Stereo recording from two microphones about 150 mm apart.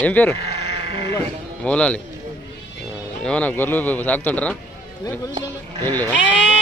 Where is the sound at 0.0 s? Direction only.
10° left (ahead or behind).